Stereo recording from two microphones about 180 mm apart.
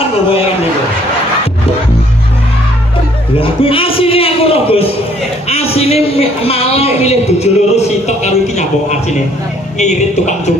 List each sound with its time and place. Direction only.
3.3 s a man's voice: 30° left (ahead or behind)
9.8 s a man's voice: 40° left (ahead or behind)